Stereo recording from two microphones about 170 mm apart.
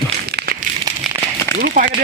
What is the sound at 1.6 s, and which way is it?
Speech, 60° right (ahead or behind).